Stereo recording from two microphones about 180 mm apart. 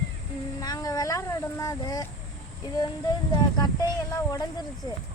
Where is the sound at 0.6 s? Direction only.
20° left (ahead or behind).